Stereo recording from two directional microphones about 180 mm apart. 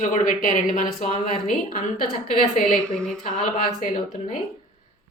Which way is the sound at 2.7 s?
5° left (ahead or behind).